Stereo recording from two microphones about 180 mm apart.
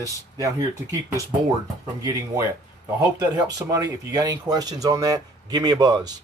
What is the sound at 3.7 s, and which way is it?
Speech, 20° right (ahead or behind).